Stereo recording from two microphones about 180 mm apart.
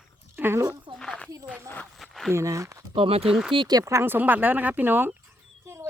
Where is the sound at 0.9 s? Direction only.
5° left (ahead or behind).